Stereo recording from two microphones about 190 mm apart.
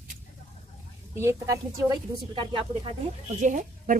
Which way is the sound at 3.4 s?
40° right (ahead or behind).